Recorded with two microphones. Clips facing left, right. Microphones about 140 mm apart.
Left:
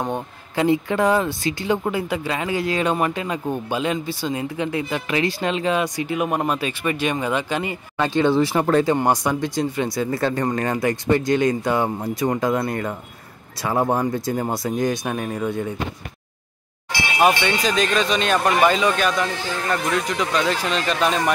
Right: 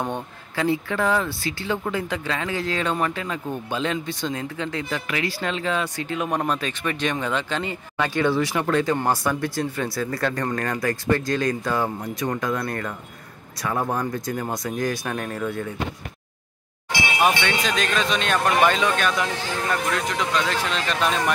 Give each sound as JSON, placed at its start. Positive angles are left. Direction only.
{"t": 0.0, "sound": "speech", "side_deg": 15}
{"t": 5.0, "sound": "speech", "side_deg": 25}
{"t": 8.0, "sound": "speech", "side_deg": 25}
{"t": 8.9, "sound": "speech", "side_deg": 15}
{"t": 15.1, "sound": "speech", "side_deg": 10}
{"t": 17.4, "sound": "speech", "side_deg": 5}